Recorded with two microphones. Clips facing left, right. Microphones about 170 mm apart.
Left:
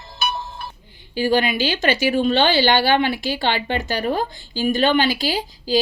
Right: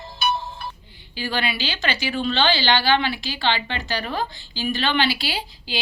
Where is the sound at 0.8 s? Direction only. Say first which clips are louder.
Left 13 dB; 45° left (ahead or behind).